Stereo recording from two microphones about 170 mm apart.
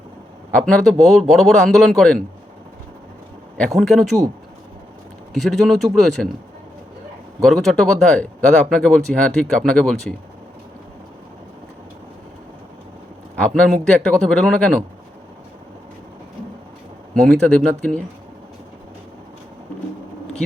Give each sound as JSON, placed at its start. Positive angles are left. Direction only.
{"t": 0.5, "sound": "speech", "side_deg": 5}
{"t": 3.6, "sound": "speech", "side_deg": 0}
{"t": 5.3, "sound": "speech", "side_deg": 0}
{"t": 7.4, "sound": "speech", "side_deg": 0}
{"t": 13.6, "sound": "speech", "side_deg": 5}
{"t": 17.2, "sound": "speech", "side_deg": 0}